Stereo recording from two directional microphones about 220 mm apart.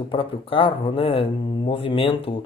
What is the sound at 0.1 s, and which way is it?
Speech, 25° left (ahead or behind).